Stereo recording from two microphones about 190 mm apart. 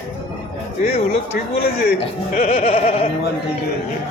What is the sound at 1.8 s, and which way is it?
Speech, 50° left (ahead or behind).